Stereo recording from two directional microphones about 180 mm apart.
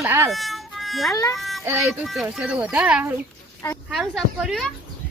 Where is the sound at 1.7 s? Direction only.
10° right (ahead or behind).